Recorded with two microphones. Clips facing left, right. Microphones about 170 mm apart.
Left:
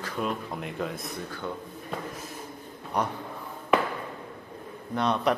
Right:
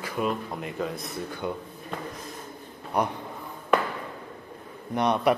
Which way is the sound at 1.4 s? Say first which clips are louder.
Right 4 dB; 15° right (ahead or behind).